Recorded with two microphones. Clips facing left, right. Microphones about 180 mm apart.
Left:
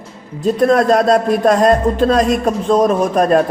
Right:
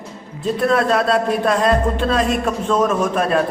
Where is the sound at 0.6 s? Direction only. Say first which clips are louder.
Left 5 dB; 40° left (ahead or behind).